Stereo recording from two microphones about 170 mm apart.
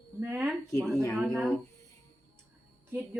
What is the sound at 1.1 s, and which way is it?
Speech, centre (ahead or behind).